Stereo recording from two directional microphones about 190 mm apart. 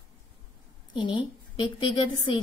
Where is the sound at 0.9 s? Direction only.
25° left (ahead or behind).